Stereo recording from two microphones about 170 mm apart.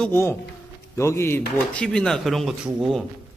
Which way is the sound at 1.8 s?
5° left (ahead or behind).